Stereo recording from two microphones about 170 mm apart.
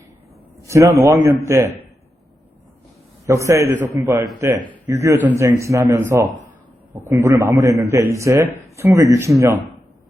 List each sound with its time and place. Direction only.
0.7 s speech: 15° right (ahead or behind)
3.2 s speech: 15° right (ahead or behind)